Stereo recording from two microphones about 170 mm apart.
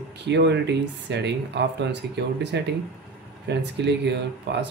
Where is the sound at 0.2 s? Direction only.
90° right.